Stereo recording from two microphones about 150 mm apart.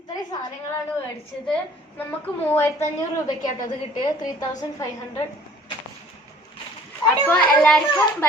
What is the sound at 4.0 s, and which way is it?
A woman's voice, 25° left (ahead or behind).